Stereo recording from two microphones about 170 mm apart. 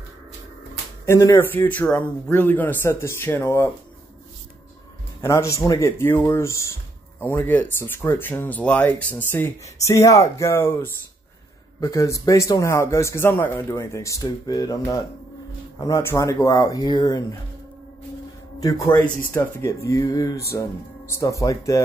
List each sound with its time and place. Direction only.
1.0 s speech: 15° left (ahead or behind)
5.2 s speech: 15° left (ahead or behind)
18.6 s speech: 20° left (ahead or behind)